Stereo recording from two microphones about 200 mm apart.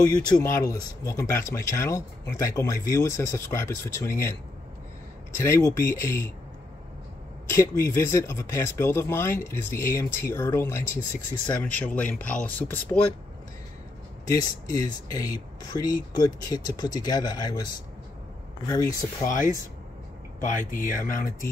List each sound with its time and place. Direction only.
0.0 s speech: 15° left (ahead or behind)
5.4 s speech: 15° left (ahead or behind)
7.4 s speech: 15° left (ahead or behind)
14.3 s speech: 15° left (ahead or behind)
18.7 s speech: 15° left (ahead or behind)
19.2 s speech: 45° left (ahead or behind)